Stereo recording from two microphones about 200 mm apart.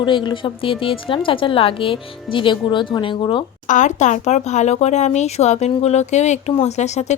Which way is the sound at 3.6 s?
40° left (ahead or behind).